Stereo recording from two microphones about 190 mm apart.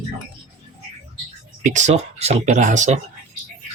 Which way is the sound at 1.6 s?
40° right (ahead or behind).